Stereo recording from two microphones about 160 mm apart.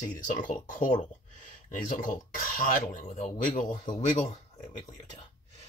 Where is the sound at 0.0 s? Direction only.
50° left (ahead or behind).